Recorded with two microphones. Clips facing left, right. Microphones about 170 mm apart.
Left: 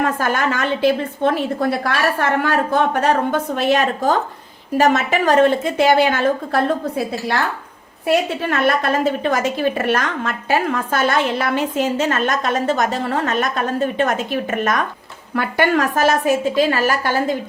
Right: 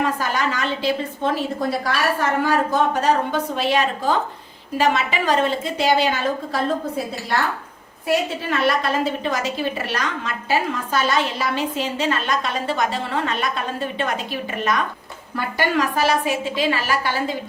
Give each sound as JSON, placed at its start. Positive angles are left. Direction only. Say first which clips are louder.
{"t": 0.0, "sound": "a woman's voice", "louder": "left 3 dB", "side_deg": 50}
{"t": 8.0, "sound": "a woman's voice", "louder": "left 4 dB", "side_deg": 55}